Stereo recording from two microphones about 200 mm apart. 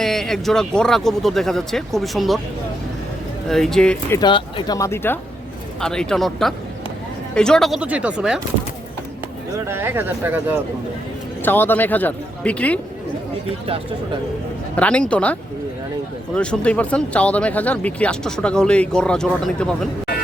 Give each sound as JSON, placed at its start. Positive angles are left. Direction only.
{"t": 0.0, "sound": "speech", "side_deg": 0}
{"t": 3.5, "sound": "speech", "side_deg": 0}
{"t": 4.2, "sound": "speech", "side_deg": 25}
{"t": 9.6, "sound": "speech", "side_deg": -10}
{"t": 11.4, "sound": "speech", "side_deg": 10}
{"t": 14.8, "sound": "speech", "side_deg": 5}